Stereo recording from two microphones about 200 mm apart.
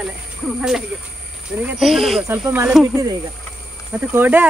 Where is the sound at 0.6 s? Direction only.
Centre (ahead or behind).